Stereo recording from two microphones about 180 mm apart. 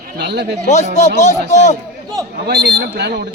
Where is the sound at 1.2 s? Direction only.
40° left (ahead or behind).